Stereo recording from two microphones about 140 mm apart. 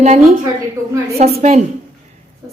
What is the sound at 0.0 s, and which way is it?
A woman's voice, 50° right (ahead or behind).